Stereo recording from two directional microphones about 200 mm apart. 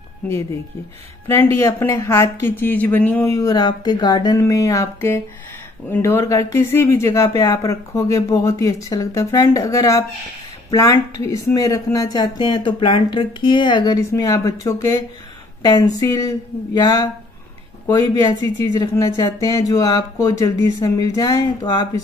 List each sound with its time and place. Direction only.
1.2 s speech: 10° left (ahead or behind)